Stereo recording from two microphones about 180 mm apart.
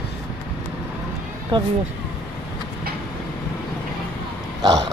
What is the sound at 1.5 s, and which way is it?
Speech, 25° right (ahead or behind).